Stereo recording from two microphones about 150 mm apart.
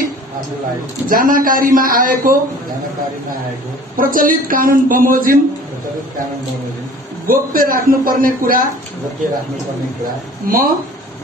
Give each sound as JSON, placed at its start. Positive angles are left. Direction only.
{"t": 1.0, "sound": "speech", "side_deg": -65}
{"t": 3.9, "sound": "speech", "side_deg": -65}
{"t": 7.2, "sound": "speech", "side_deg": -70}
{"t": 10.0, "sound": "speech", "side_deg": -70}